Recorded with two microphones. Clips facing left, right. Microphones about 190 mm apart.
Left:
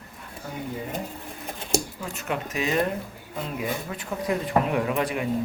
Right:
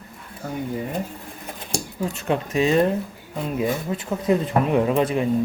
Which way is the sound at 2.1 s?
30° right (ahead or behind).